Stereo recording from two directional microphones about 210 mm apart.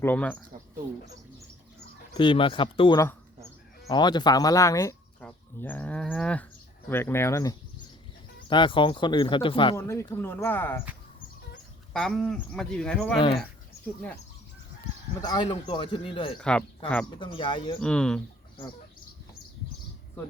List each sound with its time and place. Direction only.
0.0 s speech: 10° left (ahead or behind)
2.1 s speech: 25° left (ahead or behind)
9.7 s speech: 10° left (ahead or behind)
11.9 s speech: centre (ahead or behind)
15.2 s speech: 20° left (ahead or behind)
16.4 s speech: 5° left (ahead or behind)
17.1 s speech: 25° left (ahead or behind)
17.7 s speech: 5° left (ahead or behind)